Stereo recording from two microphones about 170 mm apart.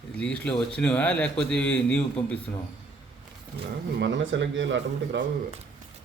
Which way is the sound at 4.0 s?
90° right.